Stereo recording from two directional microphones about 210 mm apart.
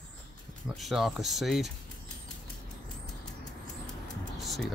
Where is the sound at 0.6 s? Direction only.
Centre (ahead or behind).